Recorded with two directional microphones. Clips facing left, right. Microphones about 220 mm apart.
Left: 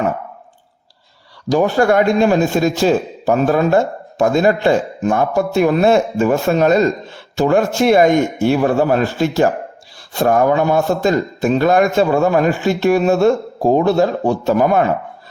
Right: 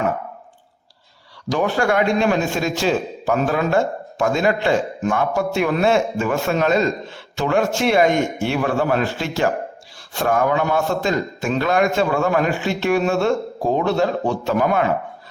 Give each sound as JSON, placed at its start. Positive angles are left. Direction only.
{"t": 1.5, "sound": "a man's voice", "side_deg": 35}